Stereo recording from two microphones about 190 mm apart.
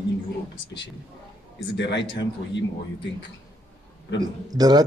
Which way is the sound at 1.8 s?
70° left (ahead or behind).